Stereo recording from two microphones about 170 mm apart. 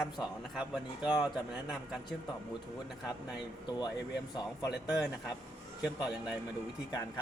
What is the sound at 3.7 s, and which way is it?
Speech, 25° left (ahead or behind).